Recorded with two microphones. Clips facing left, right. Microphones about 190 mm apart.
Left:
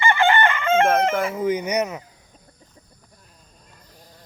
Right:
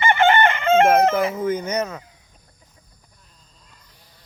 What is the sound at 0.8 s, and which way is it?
Speech, 5° right (ahead or behind).